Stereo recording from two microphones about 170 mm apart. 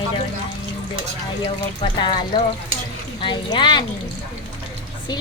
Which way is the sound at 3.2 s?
25° left (ahead or behind).